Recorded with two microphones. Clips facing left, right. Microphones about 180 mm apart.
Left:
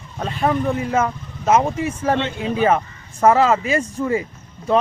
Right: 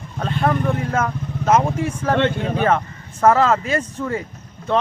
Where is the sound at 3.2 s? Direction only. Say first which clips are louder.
Left 1 dB; 10° left (ahead or behind).